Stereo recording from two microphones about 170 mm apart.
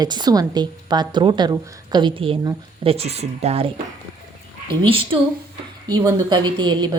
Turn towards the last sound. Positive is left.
turn(degrees=-25)  # may be behind; listen again after turning